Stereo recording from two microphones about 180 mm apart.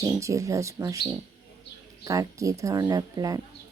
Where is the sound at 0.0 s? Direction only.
15° right (ahead or behind).